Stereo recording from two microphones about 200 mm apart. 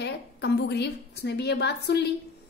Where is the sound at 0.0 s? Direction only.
60° left (ahead or behind).